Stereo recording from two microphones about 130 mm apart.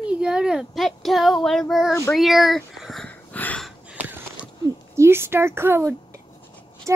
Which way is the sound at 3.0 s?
10° left (ahead or behind).